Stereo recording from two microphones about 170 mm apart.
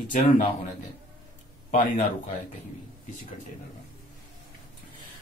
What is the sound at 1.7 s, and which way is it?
Speech, 45° left (ahead or behind).